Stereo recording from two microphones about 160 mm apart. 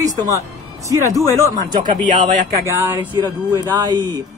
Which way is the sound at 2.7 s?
15° right (ahead or behind).